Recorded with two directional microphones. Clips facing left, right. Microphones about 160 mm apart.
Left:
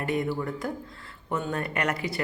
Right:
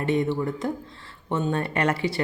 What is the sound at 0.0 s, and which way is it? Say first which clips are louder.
Speech: right 4 dB; 25° right (ahead or behind).